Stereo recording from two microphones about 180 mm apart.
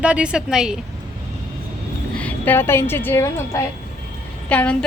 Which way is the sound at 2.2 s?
10° left (ahead or behind).